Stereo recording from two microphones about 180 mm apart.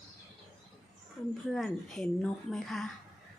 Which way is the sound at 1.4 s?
Centre (ahead or behind).